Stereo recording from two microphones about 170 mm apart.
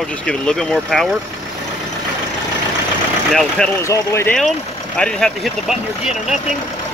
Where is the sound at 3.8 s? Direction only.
15° left (ahead or behind).